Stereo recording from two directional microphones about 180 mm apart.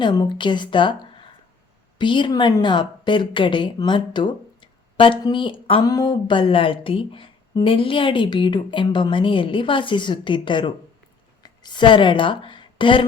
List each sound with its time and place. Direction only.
0.0 s a woman's voice: 25° left (ahead or behind)